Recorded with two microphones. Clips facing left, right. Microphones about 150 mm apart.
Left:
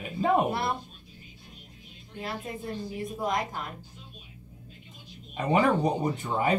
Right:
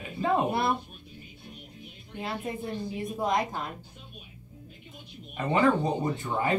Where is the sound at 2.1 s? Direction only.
20° right (ahead or behind).